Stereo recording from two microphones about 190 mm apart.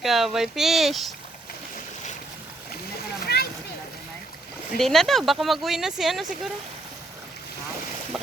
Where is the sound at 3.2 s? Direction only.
55° left (ahead or behind).